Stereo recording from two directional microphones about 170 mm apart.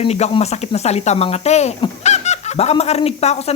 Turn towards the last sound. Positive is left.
turn(degrees=35)  # may be behind; listen again after turning